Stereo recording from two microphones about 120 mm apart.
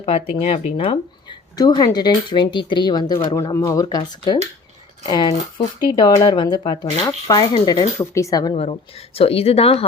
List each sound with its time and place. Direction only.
0.0 s speech: 55° left (ahead or behind)
1.5 s speech: 35° left (ahead or behind)
7.9 s speech: 25° left (ahead or behind)
8.5 s speech: 55° left (ahead or behind)